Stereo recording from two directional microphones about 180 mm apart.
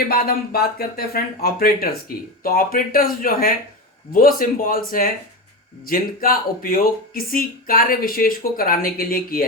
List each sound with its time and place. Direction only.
0.1 s speech: 60° left (ahead or behind)